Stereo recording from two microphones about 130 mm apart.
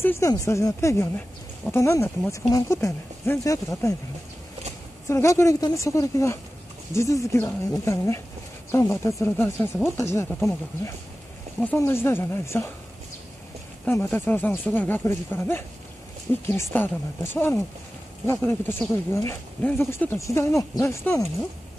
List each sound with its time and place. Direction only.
0.0 s speech: 20° left (ahead or behind)
5.0 s speech: 25° left (ahead or behind)
11.6 s speech: 15° left (ahead or behind)
13.8 s speech: 15° left (ahead or behind)